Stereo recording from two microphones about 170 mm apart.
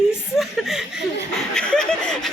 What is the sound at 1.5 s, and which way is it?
Speech, 5° left (ahead or behind).